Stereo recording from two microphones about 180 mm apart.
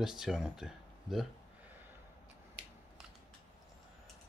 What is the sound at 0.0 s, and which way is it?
Speech, 5° right (ahead or behind).